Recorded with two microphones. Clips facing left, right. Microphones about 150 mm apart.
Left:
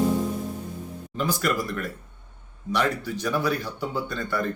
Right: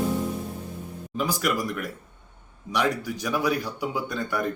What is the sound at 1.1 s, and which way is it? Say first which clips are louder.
A man's voice: even; 10° right (ahead or behind).